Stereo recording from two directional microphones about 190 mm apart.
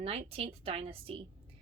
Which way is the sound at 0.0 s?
35° right (ahead or behind).